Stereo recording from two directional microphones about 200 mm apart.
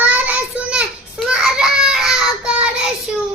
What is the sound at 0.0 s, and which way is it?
Child singing, 5° right (ahead or behind).